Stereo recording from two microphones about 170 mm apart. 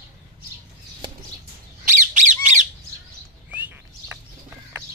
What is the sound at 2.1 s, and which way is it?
Squawk, 45° right (ahead or behind).